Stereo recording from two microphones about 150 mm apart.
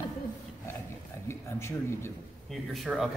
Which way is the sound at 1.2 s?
15° left (ahead or behind).